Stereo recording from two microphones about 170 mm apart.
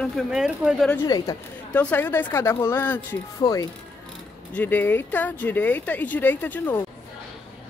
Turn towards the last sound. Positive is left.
turn(degrees=10)  # may be behind; listen again after turning